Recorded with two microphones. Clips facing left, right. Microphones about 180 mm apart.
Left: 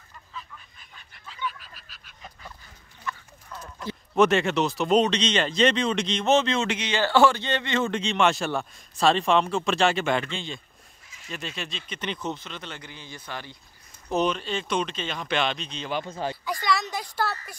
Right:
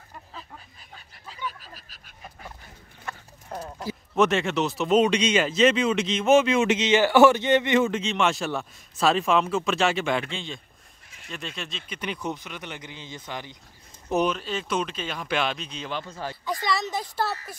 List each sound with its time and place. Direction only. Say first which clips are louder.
0.1 s a sound: even; 45° right (ahead or behind)
3.1 s clip-clop: even; 45° right (ahead or behind)
3.8 s speech: left 2 dB; centre (ahead or behind); by 7.9 s 15° right (ahead or behind)
7.9 s speech: left 1 dB; 5° right (ahead or behind)
14.2 s speech: even; 5° right (ahead or behind)